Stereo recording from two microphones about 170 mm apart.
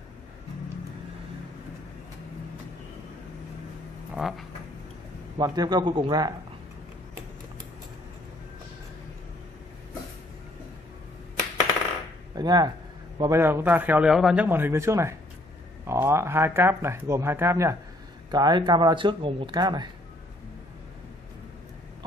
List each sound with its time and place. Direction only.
4.1 s a sound: centre (ahead or behind)
5.4 s speech: 25° right (ahead or behind)
12.4 s a man's voice: 25° right (ahead or behind)